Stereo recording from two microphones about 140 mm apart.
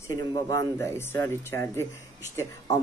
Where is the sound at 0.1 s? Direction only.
25° left (ahead or behind).